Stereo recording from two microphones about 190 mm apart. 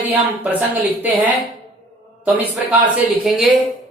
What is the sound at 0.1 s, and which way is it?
A woman's voice, 10° right (ahead or behind).